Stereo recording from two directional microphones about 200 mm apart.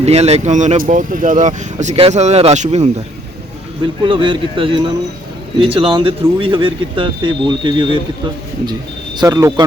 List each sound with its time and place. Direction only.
0.0 s speech: 30° right (ahead or behind)
4.0 s speech: 25° right (ahead or behind)
9.1 s speech: 20° right (ahead or behind)